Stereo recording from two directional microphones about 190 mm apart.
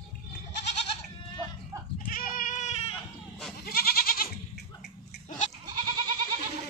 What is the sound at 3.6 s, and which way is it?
Goat, 50° left (ahead or behind).